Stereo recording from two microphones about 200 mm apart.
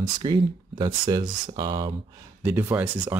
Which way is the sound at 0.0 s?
20° right (ahead or behind).